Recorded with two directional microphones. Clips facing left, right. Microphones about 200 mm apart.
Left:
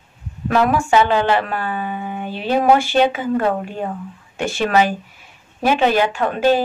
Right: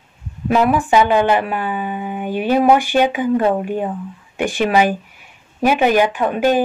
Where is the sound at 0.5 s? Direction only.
10° right (ahead or behind).